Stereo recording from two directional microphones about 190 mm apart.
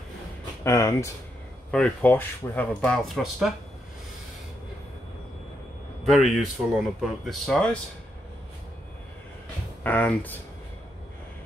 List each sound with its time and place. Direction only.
0.7 s speech: 15° left (ahead or behind)
1.7 s speech: 5° left (ahead or behind)
6.0 s a man's voice: centre (ahead or behind)
9.8 s speech: 10° left (ahead or behind)